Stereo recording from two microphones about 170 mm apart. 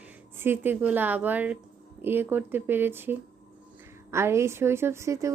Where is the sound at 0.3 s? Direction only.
15° right (ahead or behind).